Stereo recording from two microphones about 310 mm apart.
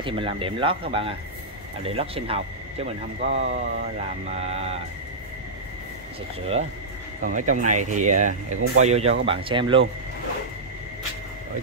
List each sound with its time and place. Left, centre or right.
0.0 s speech: centre
7.2 s speech: right